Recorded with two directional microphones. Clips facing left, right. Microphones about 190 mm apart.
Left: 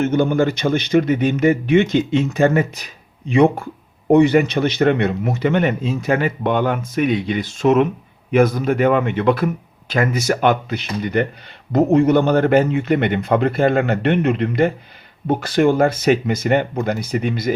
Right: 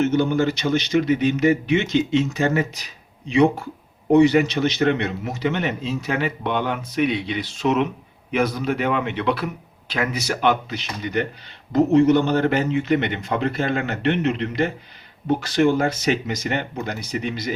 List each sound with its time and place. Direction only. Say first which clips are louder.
0.0 s a man's voice: left 2 dB; 55° left (ahead or behind)